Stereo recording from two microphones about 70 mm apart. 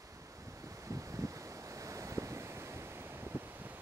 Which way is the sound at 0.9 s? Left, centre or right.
Right.